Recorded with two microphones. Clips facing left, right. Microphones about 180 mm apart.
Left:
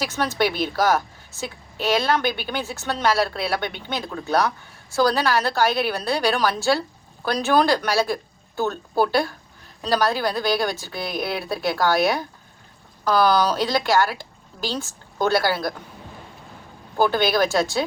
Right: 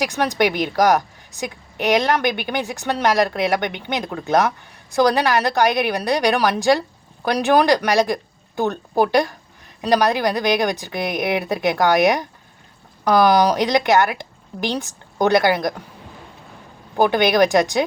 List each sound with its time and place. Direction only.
0.0 s a woman's voice: 15° right (ahead or behind)
17.0 s a woman's voice: 15° right (ahead or behind)